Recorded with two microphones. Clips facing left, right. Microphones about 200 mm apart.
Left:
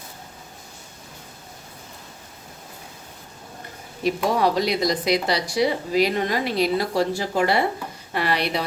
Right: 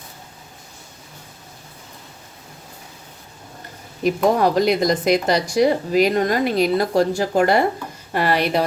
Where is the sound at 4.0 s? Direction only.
50° right (ahead or behind).